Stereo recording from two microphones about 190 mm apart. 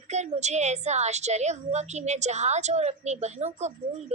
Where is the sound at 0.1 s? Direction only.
35° right (ahead or behind).